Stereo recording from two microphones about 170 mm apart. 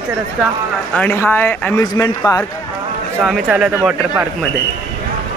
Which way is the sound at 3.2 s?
5° right (ahead or behind).